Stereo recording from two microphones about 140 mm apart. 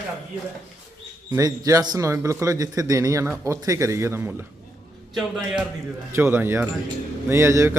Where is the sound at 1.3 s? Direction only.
25° right (ahead or behind).